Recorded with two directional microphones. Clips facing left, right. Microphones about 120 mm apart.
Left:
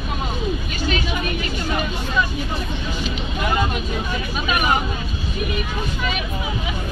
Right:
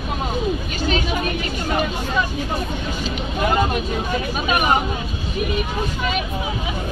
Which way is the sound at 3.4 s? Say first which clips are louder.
Right 3 dB; 40° right (ahead or behind).